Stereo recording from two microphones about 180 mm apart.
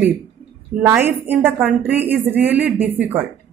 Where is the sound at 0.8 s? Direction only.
10° right (ahead or behind).